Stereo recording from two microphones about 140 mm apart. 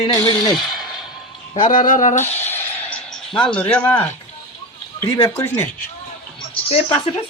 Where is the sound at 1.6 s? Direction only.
75° left (ahead or behind).